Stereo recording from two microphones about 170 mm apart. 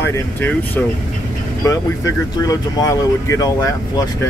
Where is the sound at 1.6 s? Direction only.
20° left (ahead or behind).